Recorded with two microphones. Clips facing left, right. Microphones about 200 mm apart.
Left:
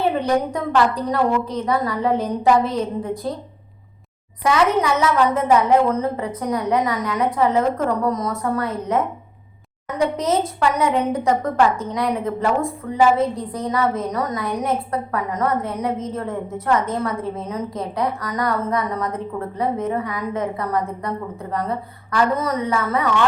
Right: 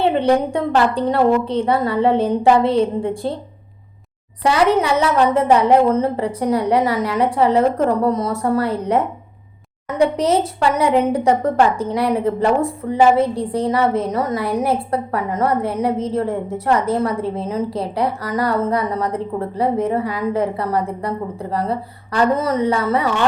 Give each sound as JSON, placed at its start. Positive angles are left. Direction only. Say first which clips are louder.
{"t": 0.0, "sound": "a woman's voice", "louder": "right 4 dB", "side_deg": -30}
{"t": 4.4, "sound": "a woman's voice", "louder": "right 2 dB", "side_deg": -30}